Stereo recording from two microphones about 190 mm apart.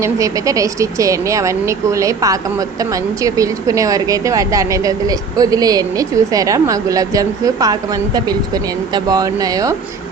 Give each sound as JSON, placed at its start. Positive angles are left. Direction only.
{"t": 0.0, "sound": "speech", "side_deg": -15}